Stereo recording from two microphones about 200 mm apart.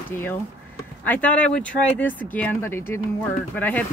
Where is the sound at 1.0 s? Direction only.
5° left (ahead or behind).